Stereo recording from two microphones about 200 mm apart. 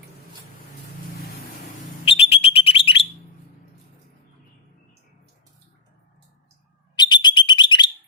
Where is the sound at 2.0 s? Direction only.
30° left (ahead or behind).